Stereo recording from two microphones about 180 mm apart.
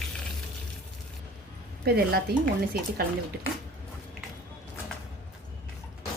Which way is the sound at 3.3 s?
60° right (ahead or behind).